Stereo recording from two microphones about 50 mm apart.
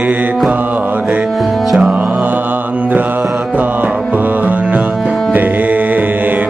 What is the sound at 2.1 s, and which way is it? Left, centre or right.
Mantra, right.